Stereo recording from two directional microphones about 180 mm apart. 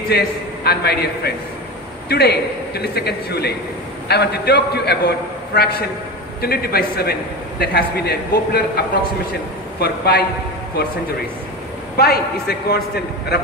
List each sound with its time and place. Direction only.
0.7 s a man's voice: 65° left (ahead or behind)
9.8 s a man's voice: 60° left (ahead or behind)
12.0 s a man's voice: 60° left (ahead or behind)